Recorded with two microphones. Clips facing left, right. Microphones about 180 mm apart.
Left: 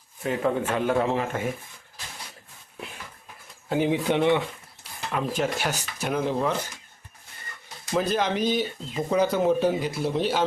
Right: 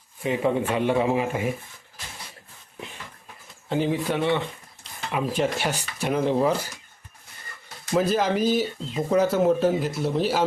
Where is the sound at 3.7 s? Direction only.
15° left (ahead or behind).